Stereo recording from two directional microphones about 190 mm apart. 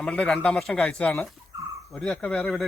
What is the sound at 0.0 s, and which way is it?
Speech, 5° left (ahead or behind).